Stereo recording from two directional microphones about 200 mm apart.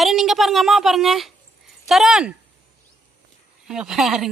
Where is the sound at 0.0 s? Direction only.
Centre (ahead or behind).